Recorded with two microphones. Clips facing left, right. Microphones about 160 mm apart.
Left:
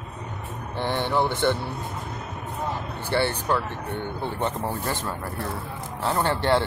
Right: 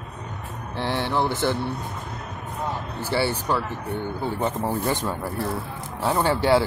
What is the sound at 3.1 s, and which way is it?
Speech, 5° right (ahead or behind).